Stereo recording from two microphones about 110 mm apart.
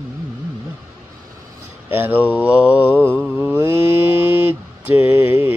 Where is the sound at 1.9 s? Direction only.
20° right (ahead or behind).